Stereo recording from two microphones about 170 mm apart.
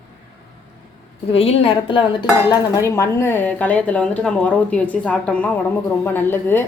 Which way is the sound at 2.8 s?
15° left (ahead or behind).